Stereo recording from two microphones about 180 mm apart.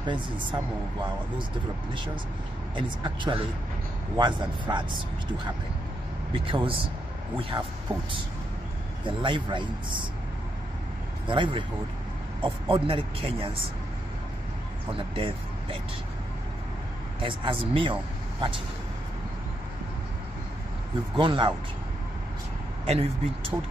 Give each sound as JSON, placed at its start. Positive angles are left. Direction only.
{"t": 0.0, "sound": "a man's voice", "side_deg": -25}
{"t": 2.7, "sound": "a man's voice", "side_deg": -30}
{"t": 11.2, "sound": "a man's voice", "side_deg": -30}
{"t": 14.9, "sound": "speech", "side_deg": -30}
{"t": 17.2, "sound": "a man's voice", "side_deg": -30}
{"t": 21.2, "sound": "a man's voice", "side_deg": -25}
{"t": 22.8, "sound": "speech", "side_deg": -30}